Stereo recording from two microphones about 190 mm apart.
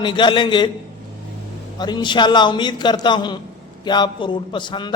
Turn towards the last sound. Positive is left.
turn(degrees=25)  # may be behind; listen again after turning